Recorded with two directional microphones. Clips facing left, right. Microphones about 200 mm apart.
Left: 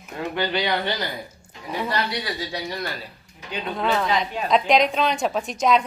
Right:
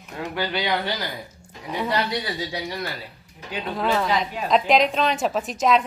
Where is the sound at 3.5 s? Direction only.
Centre (ahead or behind).